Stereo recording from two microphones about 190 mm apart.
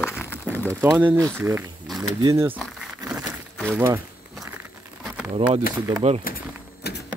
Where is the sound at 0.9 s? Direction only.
10° right (ahead or behind).